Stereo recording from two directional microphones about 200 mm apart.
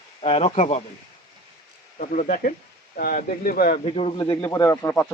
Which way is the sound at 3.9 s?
30° left (ahead or behind).